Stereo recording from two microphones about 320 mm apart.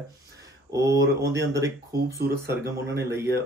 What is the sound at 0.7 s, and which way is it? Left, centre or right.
Speech, centre.